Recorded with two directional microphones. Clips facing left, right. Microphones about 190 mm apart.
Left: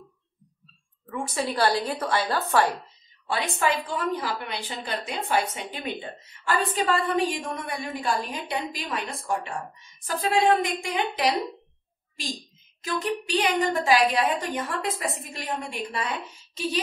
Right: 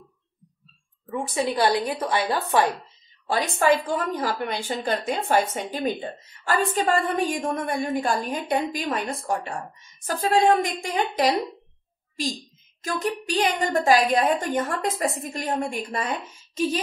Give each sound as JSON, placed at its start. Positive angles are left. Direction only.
{"t": 1.0, "sound": "a woman's voice", "side_deg": -15}
{"t": 3.3, "sound": "a woman's voice", "side_deg": -40}
{"t": 12.8, "sound": "a woman's voice", "side_deg": -45}